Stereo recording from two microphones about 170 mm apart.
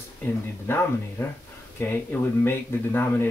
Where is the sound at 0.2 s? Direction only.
15° left (ahead or behind).